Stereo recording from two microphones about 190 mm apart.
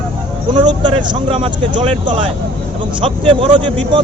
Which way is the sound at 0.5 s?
25° right (ahead or behind).